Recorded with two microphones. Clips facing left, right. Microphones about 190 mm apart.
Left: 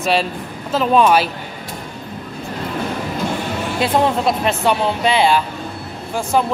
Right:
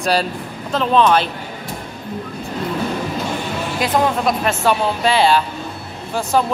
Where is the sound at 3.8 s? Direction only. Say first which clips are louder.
Left 1 dB; 30° left (ahead or behind).